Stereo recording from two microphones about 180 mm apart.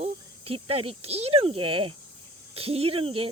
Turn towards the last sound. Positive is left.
turn(degrees=-30)  # may be behind; listen again after turning